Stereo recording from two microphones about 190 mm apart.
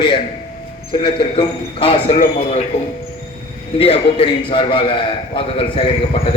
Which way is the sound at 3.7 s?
30° left (ahead or behind).